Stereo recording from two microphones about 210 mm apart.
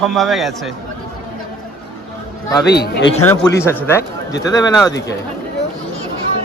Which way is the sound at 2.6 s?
50° left (ahead or behind).